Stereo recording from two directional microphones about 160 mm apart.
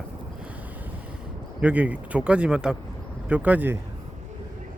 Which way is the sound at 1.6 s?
10° right (ahead or behind).